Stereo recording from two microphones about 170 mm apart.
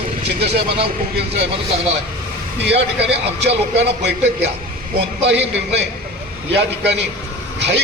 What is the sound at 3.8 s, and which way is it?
A man's voice, 85° right.